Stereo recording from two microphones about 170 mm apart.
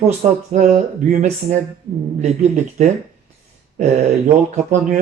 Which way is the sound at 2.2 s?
40° right (ahead or behind).